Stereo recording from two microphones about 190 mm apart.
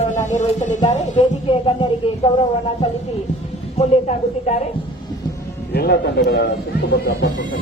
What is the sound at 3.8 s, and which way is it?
Speech, 35° left (ahead or behind).